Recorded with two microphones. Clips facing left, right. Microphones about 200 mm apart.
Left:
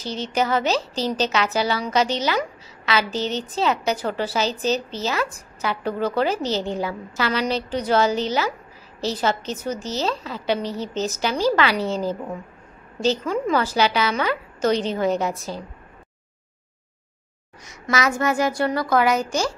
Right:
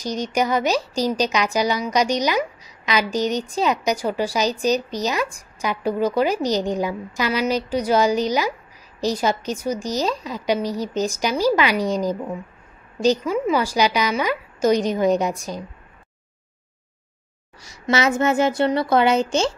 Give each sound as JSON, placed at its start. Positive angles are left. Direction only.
{"t": 0.0, "sound": "speech", "side_deg": -15}
{"t": 17.6, "sound": "a woman's voice", "side_deg": -25}